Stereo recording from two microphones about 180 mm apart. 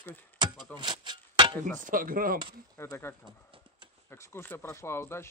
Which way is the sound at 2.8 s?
15° left (ahead or behind).